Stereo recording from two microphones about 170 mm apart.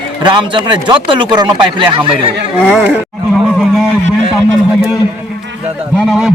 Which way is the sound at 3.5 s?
Centre (ahead or behind).